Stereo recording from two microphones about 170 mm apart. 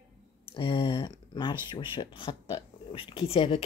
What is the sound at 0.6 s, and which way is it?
Speech, 30° left (ahead or behind).